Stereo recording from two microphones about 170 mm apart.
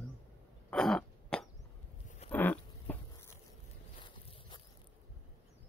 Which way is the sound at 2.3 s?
10° left (ahead or behind).